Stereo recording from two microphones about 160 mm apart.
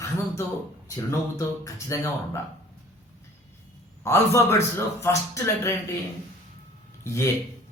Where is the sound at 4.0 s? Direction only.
15° left (ahead or behind).